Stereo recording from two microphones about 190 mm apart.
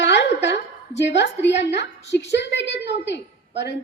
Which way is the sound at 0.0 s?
65° left (ahead or behind).